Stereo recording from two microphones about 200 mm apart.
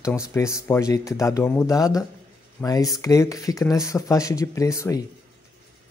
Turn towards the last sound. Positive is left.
turn(degrees=15)  # may be behind; listen again after turning